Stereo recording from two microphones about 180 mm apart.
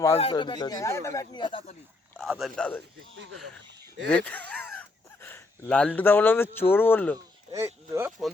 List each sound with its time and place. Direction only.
0.2 s speech: 30° left (ahead or behind)
2.1 s speech: 5° right (ahead or behind)
2.6 s speech: 10° left (ahead or behind)
7.5 s speech: 15° right (ahead or behind)